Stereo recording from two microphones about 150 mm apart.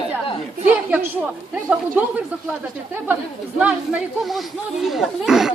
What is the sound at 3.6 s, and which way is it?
Speech, 5° right (ahead or behind).